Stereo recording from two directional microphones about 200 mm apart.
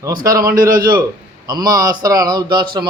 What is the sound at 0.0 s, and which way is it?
Speech, 20° right (ahead or behind).